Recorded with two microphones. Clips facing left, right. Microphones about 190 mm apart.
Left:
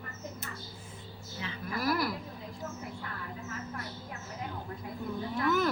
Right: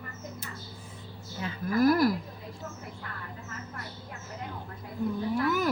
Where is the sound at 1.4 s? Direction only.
45° right (ahead or behind).